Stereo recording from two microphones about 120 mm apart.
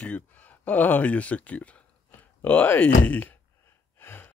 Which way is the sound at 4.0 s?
15° left (ahead or behind).